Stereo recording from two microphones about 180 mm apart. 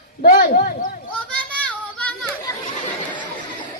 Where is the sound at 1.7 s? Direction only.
5° left (ahead or behind).